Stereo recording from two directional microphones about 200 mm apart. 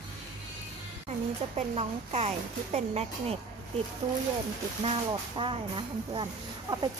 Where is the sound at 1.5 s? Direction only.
30° right (ahead or behind).